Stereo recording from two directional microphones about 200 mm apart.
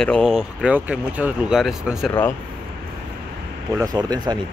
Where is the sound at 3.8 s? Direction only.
20° right (ahead or behind).